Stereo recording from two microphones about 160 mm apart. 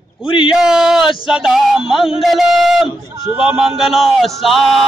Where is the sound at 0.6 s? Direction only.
5° right (ahead or behind).